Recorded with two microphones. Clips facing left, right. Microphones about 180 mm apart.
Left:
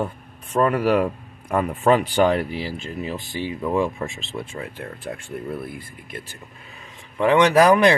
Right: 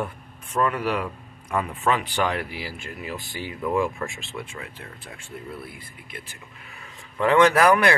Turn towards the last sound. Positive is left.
turn(degrees=15)  # may be behind; listen again after turning